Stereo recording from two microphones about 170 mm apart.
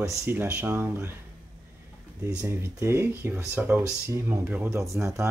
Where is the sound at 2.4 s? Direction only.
15° right (ahead or behind).